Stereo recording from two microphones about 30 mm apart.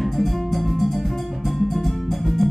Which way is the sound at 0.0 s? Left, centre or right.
Centre.